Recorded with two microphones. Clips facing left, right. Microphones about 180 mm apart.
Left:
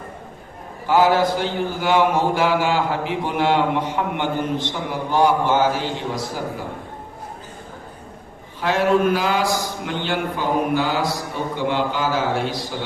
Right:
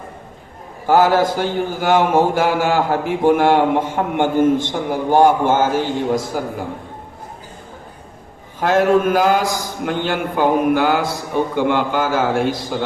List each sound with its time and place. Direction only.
0.9 s a man's voice: 50° right (ahead or behind)
8.5 s a man's voice: 45° right (ahead or behind)